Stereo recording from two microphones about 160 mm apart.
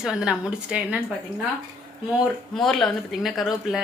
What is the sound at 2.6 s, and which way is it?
A woman's voice, centre (ahead or behind).